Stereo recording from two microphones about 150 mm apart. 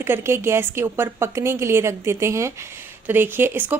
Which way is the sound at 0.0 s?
15° right (ahead or behind).